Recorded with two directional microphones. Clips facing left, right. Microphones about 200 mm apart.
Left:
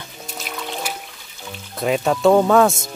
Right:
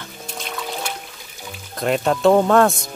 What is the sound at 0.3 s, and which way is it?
Music, 5° left (ahead or behind).